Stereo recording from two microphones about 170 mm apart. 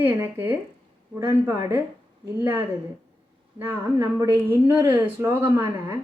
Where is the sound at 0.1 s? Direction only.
10° right (ahead or behind).